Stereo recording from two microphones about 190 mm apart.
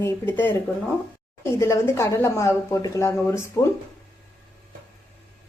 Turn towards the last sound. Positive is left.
turn(degrees=15)  # may be behind; listen again after turning